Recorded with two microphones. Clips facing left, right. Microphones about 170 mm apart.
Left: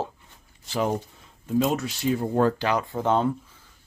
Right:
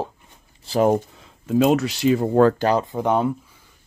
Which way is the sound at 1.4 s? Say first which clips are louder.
Right 6 dB; 90° right.